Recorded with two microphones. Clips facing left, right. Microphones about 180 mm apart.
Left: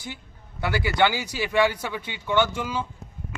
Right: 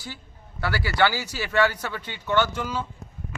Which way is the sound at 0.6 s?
20° left (ahead or behind).